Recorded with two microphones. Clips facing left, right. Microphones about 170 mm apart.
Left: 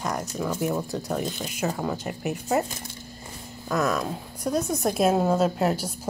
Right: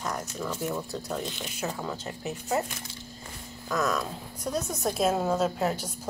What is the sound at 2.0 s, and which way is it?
Speech, 10° left (ahead or behind).